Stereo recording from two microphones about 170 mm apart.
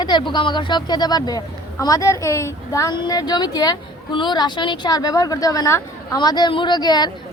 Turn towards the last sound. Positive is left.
turn(degrees=25)  # may be behind; listen again after turning